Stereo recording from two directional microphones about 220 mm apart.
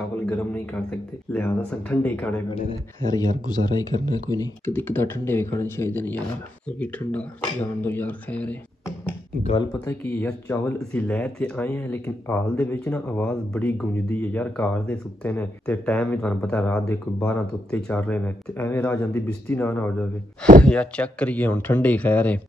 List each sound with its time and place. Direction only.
0.3 s speech: 5° left (ahead or behind)
9.4 s speech: 30° left (ahead or behind)
9.8 s speech: 5° left (ahead or behind)